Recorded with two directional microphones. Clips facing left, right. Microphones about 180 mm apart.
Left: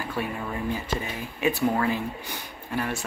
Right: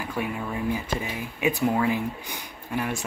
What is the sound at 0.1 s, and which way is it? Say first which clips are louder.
Speech: right 2 dB; 15° right (ahead or behind).